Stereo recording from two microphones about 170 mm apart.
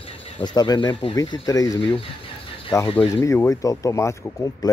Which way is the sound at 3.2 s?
20° left (ahead or behind).